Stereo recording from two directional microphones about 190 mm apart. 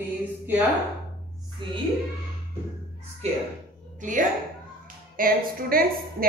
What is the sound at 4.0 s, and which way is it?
A woman's voice, 40° right (ahead or behind).